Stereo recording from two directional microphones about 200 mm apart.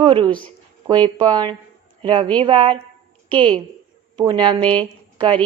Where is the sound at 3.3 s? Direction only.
5° left (ahead or behind).